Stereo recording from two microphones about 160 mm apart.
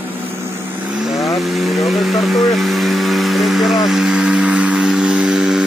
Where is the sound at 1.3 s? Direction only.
Centre (ahead or behind).